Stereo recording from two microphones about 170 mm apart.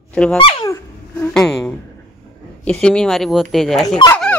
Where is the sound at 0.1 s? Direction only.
5° left (ahead or behind).